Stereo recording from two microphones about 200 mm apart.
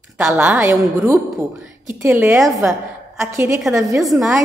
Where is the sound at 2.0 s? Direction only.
10° right (ahead or behind).